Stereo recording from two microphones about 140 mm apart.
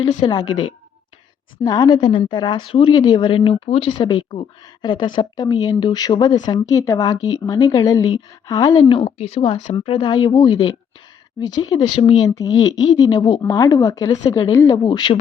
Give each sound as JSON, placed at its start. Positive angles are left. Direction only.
{"t": 0.2, "sound": "a woman's voice", "side_deg": 30}
{"t": 14.8, "sound": "a woman's voice", "side_deg": 30}